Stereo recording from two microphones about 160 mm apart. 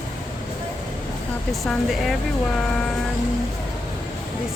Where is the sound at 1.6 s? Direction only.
Centre (ahead or behind).